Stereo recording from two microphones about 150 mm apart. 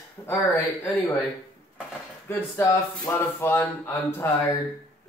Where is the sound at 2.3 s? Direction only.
15° left (ahead or behind).